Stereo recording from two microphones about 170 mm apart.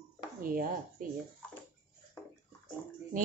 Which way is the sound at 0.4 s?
55° right (ahead or behind).